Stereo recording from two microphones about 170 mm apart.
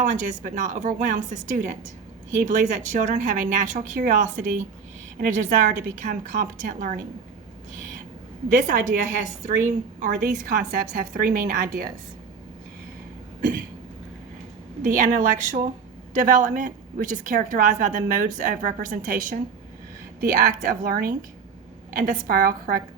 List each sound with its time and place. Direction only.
0.1 s a woman's voice: 45° right (ahead or behind)
8.5 s a woman's voice: 45° right (ahead or behind)
14.8 s a woman's voice: 50° right (ahead or behind)